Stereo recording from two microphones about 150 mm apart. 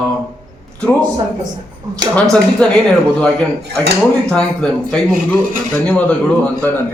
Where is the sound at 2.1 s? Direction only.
5° left (ahead or behind).